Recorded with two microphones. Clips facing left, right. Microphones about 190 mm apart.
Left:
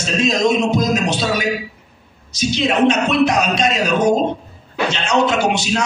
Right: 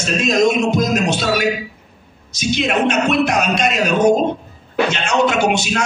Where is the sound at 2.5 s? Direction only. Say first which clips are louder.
Left 1 dB; 50° right (ahead or behind).